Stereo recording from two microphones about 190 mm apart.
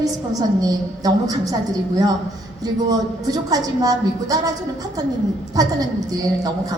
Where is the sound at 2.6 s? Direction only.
20° right (ahead or behind).